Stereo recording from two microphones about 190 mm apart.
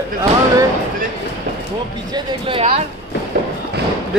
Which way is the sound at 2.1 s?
30° right (ahead or behind).